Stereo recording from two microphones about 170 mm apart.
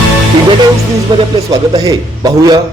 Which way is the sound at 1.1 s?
25° right (ahead or behind).